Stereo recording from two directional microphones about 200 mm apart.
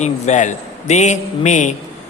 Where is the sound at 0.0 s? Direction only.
35° left (ahead or behind).